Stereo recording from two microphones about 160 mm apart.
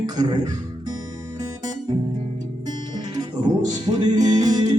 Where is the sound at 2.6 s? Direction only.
25° right (ahead or behind).